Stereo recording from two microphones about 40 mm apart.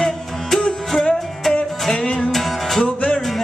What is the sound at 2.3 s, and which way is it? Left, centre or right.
Music, centre.